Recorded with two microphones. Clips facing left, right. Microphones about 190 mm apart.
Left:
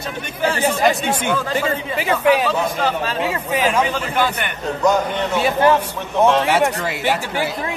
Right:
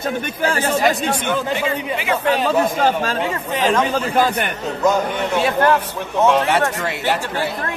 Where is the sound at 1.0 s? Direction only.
10° left (ahead or behind).